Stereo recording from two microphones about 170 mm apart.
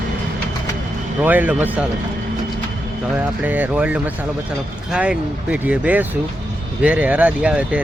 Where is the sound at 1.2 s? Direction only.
10° right (ahead or behind).